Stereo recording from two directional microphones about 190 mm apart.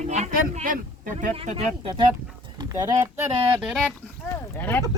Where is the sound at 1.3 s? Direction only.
35° right (ahead or behind).